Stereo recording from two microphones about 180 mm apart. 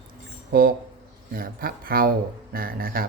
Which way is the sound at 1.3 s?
55° right (ahead or behind).